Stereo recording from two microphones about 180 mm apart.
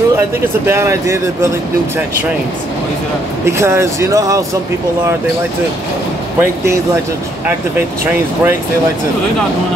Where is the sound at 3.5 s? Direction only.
15° right (ahead or behind).